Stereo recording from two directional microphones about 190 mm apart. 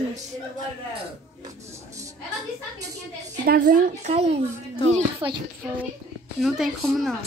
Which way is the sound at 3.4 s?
45° right (ahead or behind).